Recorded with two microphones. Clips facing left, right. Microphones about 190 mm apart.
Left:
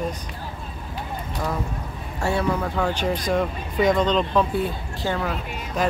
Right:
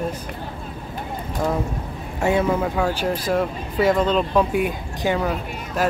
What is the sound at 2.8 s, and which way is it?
Speech, 5° right (ahead or behind).